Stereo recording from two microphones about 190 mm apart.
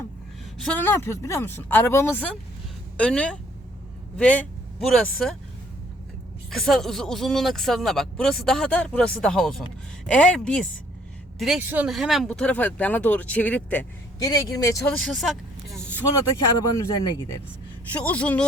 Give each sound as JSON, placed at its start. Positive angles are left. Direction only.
{"t": 0.6, "sound": "speech", "side_deg": 10}
{"t": 6.5, "sound": "speech", "side_deg": 0}
{"t": 14.3, "sound": "speech", "side_deg": 20}
{"t": 14.9, "sound": "vehicle", "side_deg": 0}
{"t": 16.6, "sound": "speech", "side_deg": 15}